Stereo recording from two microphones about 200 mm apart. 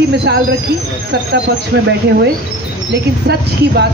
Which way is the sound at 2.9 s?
55° right (ahead or behind).